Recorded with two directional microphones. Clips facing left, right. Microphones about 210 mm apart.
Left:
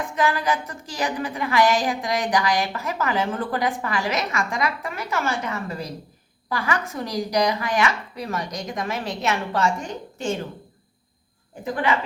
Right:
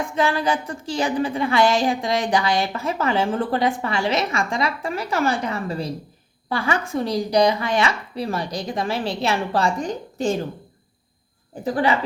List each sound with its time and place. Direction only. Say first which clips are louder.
0.2 s a woman's voice: right 1 dB; 30° right (ahead or behind)
11.6 s speech: right 3 dB; 35° right (ahead or behind)